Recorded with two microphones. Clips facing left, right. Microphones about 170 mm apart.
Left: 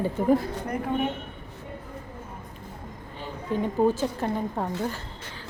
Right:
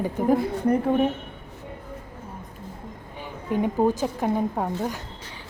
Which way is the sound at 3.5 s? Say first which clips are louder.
Right 1 dB; 15° right (ahead or behind).